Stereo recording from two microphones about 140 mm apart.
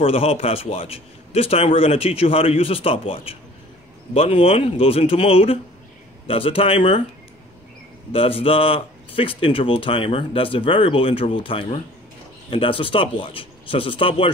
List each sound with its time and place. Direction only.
0.0 s a man's voice: 45° left (ahead or behind)
8.1 s speech: 40° left (ahead or behind)